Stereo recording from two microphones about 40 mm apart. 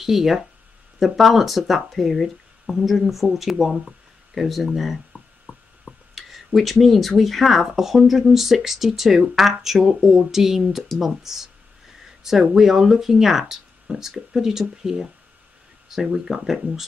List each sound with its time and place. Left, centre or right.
0.0 s speech: centre
5.1 s a sound: centre
6.1 s speech: centre